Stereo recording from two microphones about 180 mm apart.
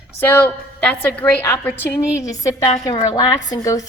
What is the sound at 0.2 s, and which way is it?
A woman's voice, 10° left (ahead or behind).